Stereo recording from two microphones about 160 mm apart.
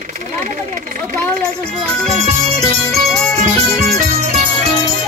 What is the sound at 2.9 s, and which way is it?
Music, centre (ahead or behind).